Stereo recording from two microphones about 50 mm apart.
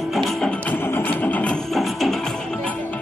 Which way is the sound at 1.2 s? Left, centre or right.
Left.